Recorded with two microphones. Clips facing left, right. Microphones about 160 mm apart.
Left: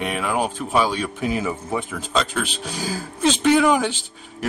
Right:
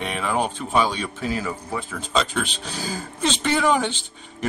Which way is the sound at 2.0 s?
Centre (ahead or behind).